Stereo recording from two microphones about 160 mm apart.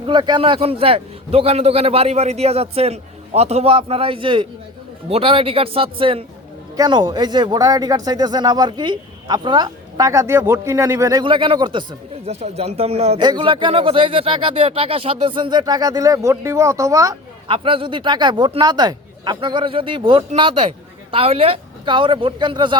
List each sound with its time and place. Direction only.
0.1 s speech: 30° right (ahead or behind)
12.3 s speech: 40° right (ahead or behind)
13.2 s speech: 30° right (ahead or behind)
17.5 s speech: 35° right (ahead or behind)